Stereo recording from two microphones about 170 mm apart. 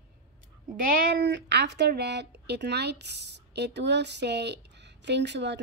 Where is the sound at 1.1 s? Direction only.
85° right.